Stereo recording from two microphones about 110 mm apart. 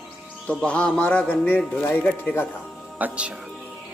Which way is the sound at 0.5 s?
10° left (ahead or behind).